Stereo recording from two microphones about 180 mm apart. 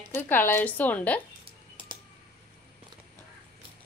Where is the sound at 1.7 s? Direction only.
25° right (ahead or behind).